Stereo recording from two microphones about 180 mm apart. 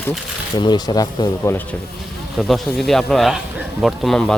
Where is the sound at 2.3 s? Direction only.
Centre (ahead or behind).